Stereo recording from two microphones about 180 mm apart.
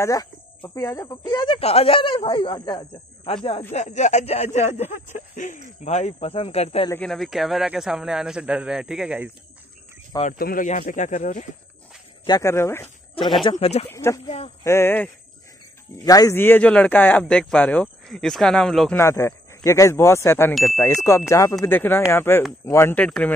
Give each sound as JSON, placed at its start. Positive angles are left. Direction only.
{"t": 0.0, "sound": "speech", "side_deg": 20}
{"t": 3.7, "sound": "speech", "side_deg": 40}
{"t": 6.9, "sound": "speech", "side_deg": 5}
{"t": 10.2, "sound": "speech", "side_deg": 50}
{"t": 12.3, "sound": "a man's voice", "side_deg": 15}
{"t": 13.4, "sound": "speech", "side_deg": 30}
{"t": 13.8, "sound": "a man's voice", "side_deg": 15}
{"t": 18.9, "sound": "a man's voice", "side_deg": 15}